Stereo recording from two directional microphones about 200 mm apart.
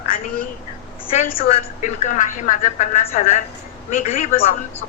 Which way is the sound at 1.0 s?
35° left (ahead or behind).